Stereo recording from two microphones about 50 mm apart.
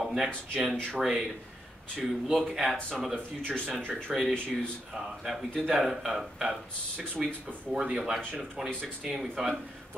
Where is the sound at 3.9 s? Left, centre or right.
Centre.